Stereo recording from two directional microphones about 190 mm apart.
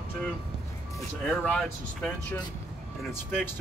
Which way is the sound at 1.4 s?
5° left (ahead or behind).